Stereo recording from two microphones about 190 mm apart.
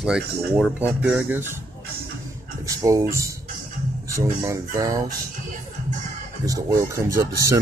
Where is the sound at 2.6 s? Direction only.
15° right (ahead or behind).